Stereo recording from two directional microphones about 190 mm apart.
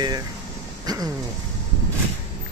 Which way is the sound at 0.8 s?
20° right (ahead or behind).